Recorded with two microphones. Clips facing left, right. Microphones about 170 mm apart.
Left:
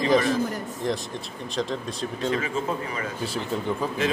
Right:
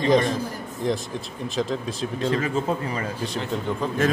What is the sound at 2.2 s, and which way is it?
Speech, 40° right (ahead or behind).